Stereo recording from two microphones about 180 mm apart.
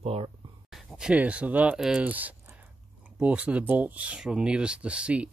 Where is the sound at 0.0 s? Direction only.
35° right (ahead or behind).